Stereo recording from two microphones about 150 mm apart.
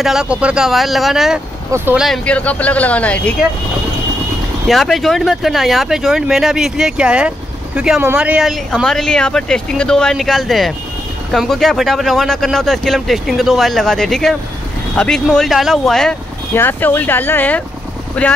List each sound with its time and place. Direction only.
0.0 s speech: 5° right (ahead or behind)
2.2 s speech: 10° left (ahead or behind)
4.6 s speech: centre (ahead or behind)
16.5 s speech: 15° left (ahead or behind)